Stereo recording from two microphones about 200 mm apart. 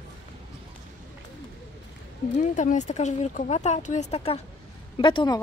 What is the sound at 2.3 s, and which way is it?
Speech, 40° left (ahead or behind).